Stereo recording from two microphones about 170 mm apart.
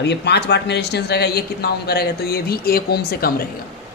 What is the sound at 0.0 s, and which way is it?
Speech, 80° left.